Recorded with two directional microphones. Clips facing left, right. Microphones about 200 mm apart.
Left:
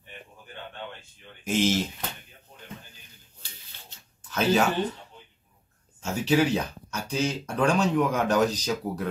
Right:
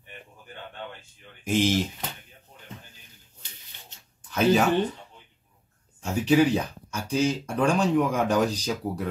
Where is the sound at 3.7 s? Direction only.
20° right (ahead or behind).